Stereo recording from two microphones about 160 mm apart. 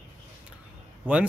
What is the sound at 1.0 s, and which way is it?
Speech, 10° right (ahead or behind).